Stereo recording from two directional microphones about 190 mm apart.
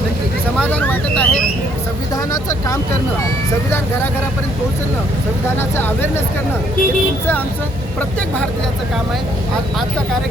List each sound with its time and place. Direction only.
0.7 s speech: 10° left (ahead or behind)
2.3 s speech: 20° left (ahead or behind)
5.5 s speech: 10° left (ahead or behind)